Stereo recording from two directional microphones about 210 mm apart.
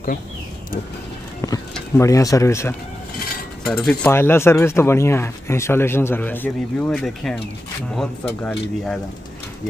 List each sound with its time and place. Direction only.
1.4 s speech: 15° left (ahead or behind)
3.6 s speech: 5° left (ahead or behind)
8.5 s speech: centre (ahead or behind)